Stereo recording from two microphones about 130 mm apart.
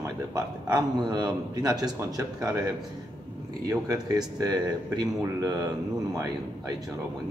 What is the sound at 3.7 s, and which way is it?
Speech, 25° right (ahead or behind).